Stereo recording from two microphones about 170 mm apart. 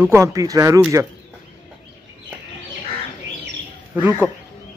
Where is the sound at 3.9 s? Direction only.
10° right (ahead or behind).